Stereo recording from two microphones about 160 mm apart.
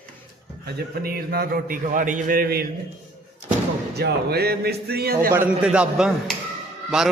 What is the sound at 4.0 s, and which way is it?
A man's voice, 85° right.